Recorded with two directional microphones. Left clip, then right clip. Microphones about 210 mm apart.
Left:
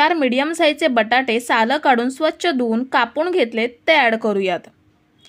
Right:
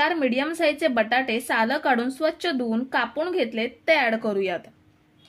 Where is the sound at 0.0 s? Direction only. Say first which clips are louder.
Left 6 dB; 35° left (ahead or behind).